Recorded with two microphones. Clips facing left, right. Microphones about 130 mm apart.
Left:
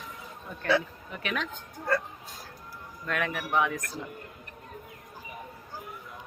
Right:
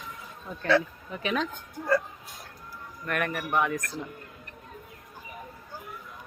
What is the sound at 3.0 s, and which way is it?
Speech, centre (ahead or behind).